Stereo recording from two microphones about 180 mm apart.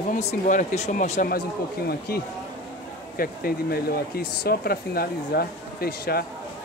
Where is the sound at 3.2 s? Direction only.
55° left (ahead or behind).